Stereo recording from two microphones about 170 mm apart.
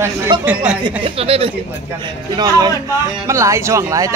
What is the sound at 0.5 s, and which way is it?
Speech, 5° right (ahead or behind).